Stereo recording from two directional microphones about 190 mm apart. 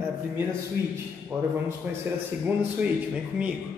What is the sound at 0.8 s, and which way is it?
Speech, 60° left (ahead or behind).